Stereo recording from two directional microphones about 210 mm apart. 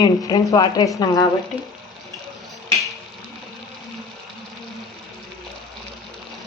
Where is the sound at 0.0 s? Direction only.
20° left (ahead or behind).